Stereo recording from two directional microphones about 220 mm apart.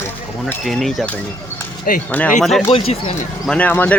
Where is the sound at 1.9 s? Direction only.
40° left (ahead or behind).